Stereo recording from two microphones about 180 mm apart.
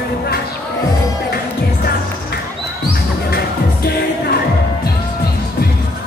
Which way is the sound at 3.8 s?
60° left (ahead or behind).